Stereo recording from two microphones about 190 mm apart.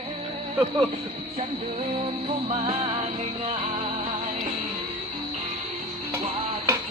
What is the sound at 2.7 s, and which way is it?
Music, 30° right (ahead or behind).